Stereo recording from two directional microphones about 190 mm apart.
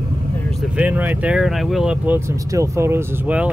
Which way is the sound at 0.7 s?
10° right (ahead or behind).